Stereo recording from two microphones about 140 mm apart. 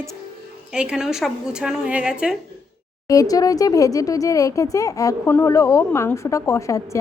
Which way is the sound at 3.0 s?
25° left (ahead or behind).